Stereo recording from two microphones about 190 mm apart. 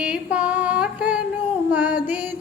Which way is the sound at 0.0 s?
5° right (ahead or behind).